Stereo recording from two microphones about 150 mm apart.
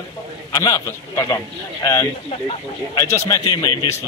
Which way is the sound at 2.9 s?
20° left (ahead or behind).